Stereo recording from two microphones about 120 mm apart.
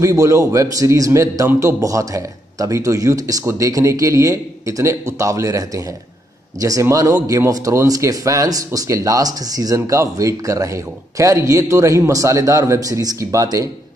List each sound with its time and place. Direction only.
0.0 s a man's voice: 25° right (ahead or behind)